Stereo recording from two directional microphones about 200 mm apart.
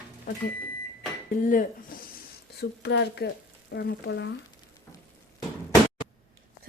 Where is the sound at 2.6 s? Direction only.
60° left (ahead or behind).